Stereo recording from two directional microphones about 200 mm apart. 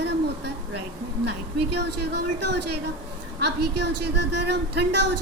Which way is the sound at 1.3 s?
55° right (ahead or behind).